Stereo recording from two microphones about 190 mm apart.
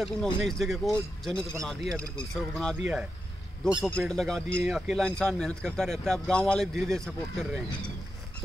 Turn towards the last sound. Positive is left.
turn(degrees=0)  # may be behind; listen again after turning